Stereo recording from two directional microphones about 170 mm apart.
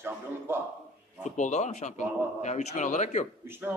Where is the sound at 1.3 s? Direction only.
45° left (ahead or behind).